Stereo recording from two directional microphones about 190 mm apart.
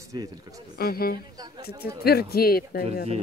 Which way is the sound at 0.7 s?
55° left (ahead or behind).